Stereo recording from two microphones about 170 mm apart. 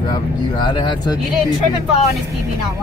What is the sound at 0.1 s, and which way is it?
Speech, 25° left (ahead or behind).